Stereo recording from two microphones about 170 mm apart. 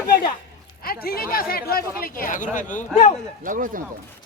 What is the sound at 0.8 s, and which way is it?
Speech, 60° left (ahead or behind).